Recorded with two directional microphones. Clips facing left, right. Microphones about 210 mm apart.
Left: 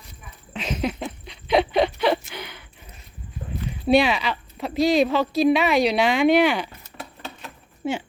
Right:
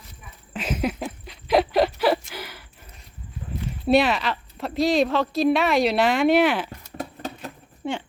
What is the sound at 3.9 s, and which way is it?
A woman's voice, centre (ahead or behind).